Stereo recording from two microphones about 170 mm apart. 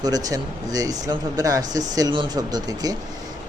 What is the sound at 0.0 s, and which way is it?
Speech, 20° right (ahead or behind).